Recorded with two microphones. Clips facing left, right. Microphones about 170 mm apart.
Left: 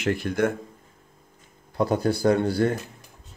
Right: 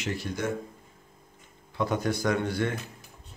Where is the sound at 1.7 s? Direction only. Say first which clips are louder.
Left 5 dB; 35° left (ahead or behind).